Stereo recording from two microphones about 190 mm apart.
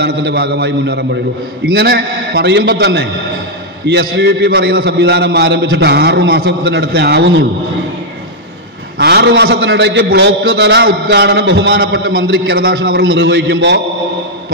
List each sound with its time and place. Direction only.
0.0 s a man's voice: 60° right (ahead or behind)
8.9 s a man's voice: 60° right (ahead or behind)
13.0 s a man's voice: 80° right